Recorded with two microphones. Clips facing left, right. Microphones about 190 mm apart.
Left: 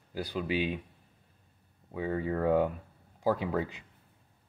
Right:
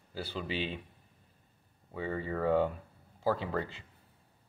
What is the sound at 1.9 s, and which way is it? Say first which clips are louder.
Speech: left 4 dB; 10° left (ahead or behind).